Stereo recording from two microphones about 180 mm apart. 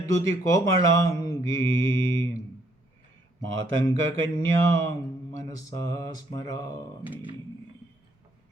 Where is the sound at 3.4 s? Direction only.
90° right.